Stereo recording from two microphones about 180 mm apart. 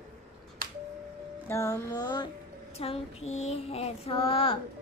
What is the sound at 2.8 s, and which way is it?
Child singing, 35° left (ahead or behind).